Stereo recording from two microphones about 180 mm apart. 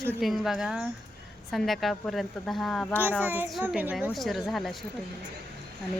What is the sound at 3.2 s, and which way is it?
A child's voice, 10° right (ahead or behind).